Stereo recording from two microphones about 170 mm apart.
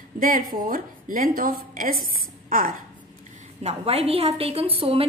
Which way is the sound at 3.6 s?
40° right (ahead or behind).